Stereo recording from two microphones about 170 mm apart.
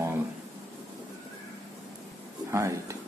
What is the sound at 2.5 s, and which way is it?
Speech, 15° right (ahead or behind).